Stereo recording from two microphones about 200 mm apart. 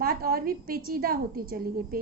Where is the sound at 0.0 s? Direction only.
45° right (ahead or behind).